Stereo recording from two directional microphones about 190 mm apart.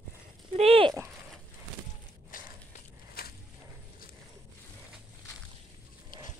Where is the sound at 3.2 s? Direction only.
55° left (ahead or behind).